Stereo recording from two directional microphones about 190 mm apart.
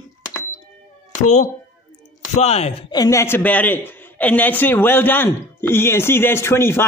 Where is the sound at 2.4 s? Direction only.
35° left (ahead or behind).